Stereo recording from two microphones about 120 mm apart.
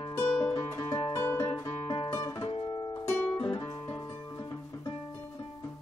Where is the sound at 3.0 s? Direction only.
15° left (ahead or behind).